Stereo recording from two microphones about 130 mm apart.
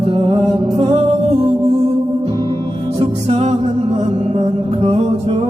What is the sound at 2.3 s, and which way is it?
Music, 30° right (ahead or behind).